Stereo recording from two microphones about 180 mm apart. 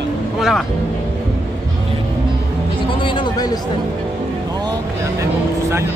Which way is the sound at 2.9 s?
30° left (ahead or behind).